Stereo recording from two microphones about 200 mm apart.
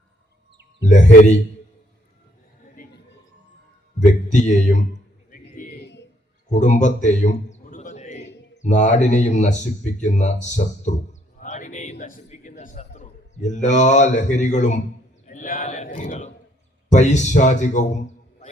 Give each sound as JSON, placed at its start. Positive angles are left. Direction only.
{"t": 0.9, "sound": "speech", "side_deg": 35}
{"t": 2.7, "sound": "a sound", "side_deg": 55}
{"t": 4.0, "sound": "speech", "side_deg": 35}
{"t": 5.3, "sound": "bird", "side_deg": 45}
{"t": 8.5, "sound": "speech", "side_deg": 35}
{"t": 11.3, "sound": "a sound", "side_deg": 40}
{"t": 15.3, "sound": "speech", "side_deg": 40}